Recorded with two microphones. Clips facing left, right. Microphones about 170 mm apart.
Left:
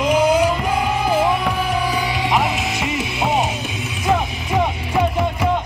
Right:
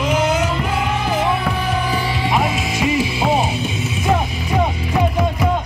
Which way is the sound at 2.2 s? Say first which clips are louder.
Right 1 dB; centre (ahead or behind).